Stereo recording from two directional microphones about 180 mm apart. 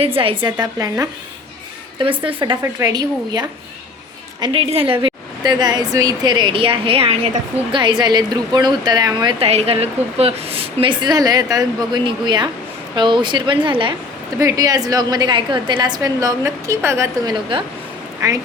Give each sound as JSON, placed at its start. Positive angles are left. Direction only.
{"t": 0.0, "sound": "a woman's voice", "side_deg": -30}
{"t": 0.6, "sound": "a woman's voice", "side_deg": -20}
{"t": 9.5, "sound": "a woman's voice", "side_deg": -35}